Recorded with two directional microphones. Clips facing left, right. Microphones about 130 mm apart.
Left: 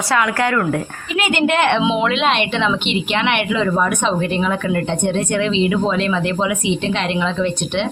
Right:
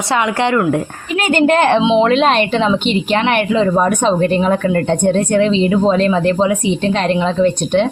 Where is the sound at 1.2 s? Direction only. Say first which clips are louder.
Right 4 dB; 40° right (ahead or behind).